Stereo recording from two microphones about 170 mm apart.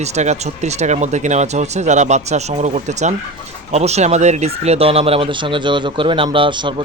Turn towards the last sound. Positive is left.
turn(degrees=-30)  # may be behind; listen again after turning